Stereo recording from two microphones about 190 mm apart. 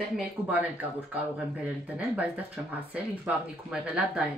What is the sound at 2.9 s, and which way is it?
Speech, 5° right (ahead or behind).